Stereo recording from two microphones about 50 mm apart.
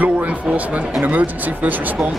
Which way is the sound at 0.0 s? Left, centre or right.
Right.